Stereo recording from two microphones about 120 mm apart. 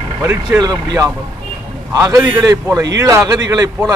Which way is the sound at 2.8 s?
25° right (ahead or behind).